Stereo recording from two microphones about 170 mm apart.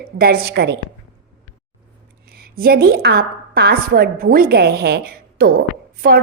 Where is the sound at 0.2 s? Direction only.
65° right (ahead or behind).